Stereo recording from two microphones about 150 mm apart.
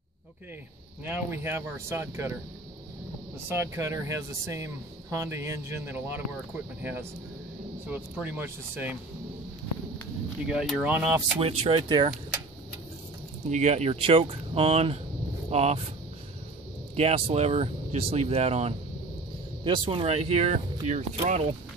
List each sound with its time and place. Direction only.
1.0 s speech: 15° right (ahead or behind)
3.4 s speech: 15° right (ahead or behind)
10.5 s speech: 5° right (ahead or behind)
11.3 s speech: 40° right (ahead or behind)
13.5 s speech: 50° right (ahead or behind)
16.9 s speech: 45° right (ahead or behind)
19.6 s speech: 35° right (ahead or behind)